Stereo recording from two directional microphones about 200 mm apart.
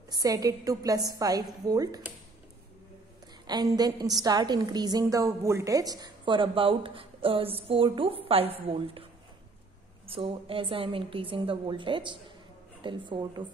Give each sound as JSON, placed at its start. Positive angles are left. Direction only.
{"t": 0.1, "sound": "a woman's voice", "side_deg": -20}
{"t": 3.4, "sound": "a woman's voice", "side_deg": -20}
{"t": 10.0, "sound": "a woman's voice", "side_deg": -30}